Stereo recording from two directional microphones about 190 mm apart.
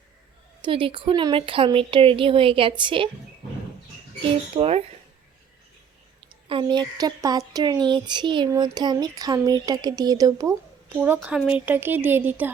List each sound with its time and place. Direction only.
0.6 s speech: 25° right (ahead or behind)
4.2 s speech: 30° right (ahead or behind)
6.1 s speech: 25° right (ahead or behind); by 12.5 s 10° right (ahead or behind)